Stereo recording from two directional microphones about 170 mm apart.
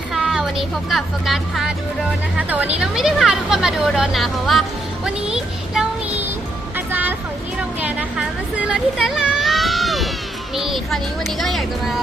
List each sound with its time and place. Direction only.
0.1 s speech: centre (ahead or behind)
5.0 s child singing: 5° right (ahead or behind)
6.7 s music: 10° right (ahead or behind)
7.8 s a sound: 10° right (ahead or behind)
10.5 s speech: centre (ahead or behind)